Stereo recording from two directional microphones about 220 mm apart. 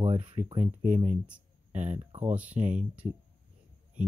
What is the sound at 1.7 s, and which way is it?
Speech, 30° right (ahead or behind).